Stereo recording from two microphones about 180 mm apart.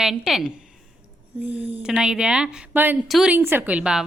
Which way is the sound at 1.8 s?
5° right (ahead or behind).